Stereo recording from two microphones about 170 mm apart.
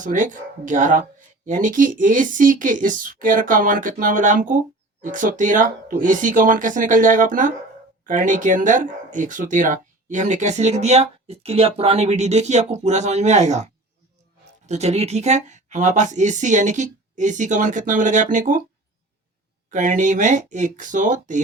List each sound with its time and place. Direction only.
0.0 s speech: 50° right (ahead or behind)
14.7 s speech: 40° right (ahead or behind)
19.7 s speech: 50° right (ahead or behind)